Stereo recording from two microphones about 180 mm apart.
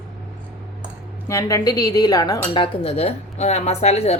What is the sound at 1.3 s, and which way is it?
Speech, 20° left (ahead or behind).